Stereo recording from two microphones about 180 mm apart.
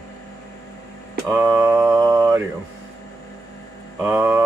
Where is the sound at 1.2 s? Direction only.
15° right (ahead or behind).